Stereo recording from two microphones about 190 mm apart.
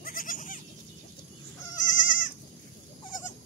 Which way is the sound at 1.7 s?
45° left (ahead or behind).